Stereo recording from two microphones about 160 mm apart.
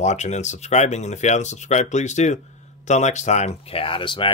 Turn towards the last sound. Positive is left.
turn(degrees=30)  # may be behind; listen again after turning